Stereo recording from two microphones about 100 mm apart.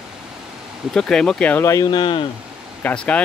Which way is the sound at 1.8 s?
55° left (ahead or behind).